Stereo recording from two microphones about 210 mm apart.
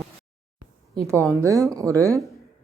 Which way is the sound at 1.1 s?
15° right (ahead or behind).